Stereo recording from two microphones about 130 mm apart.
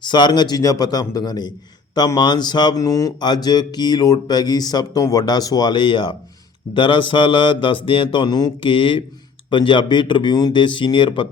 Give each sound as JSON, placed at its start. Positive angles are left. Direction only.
{"t": 0.0, "sound": "speech", "side_deg": 35}